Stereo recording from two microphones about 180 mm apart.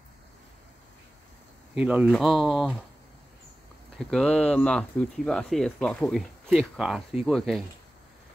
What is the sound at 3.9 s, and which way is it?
Speech, 5° left (ahead or behind).